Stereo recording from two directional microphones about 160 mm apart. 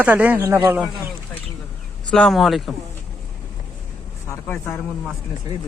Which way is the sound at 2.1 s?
Centre (ahead or behind).